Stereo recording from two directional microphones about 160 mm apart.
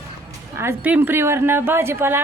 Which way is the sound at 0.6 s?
15° right (ahead or behind).